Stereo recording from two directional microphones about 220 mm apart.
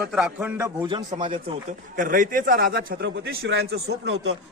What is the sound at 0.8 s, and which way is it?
Speech, 20° right (ahead or behind).